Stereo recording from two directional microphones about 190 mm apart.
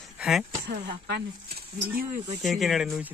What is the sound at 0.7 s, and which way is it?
Speech, 60° right (ahead or behind).